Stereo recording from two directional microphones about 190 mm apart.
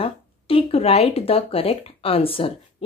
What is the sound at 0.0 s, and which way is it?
Speech, 30° left (ahead or behind).